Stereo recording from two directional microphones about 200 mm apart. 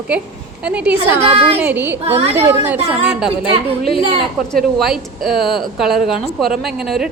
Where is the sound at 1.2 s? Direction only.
30° right (ahead or behind).